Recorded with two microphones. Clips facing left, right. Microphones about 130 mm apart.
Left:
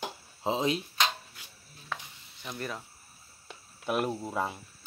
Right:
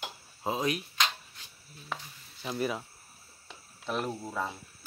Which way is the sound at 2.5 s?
10° right (ahead or behind).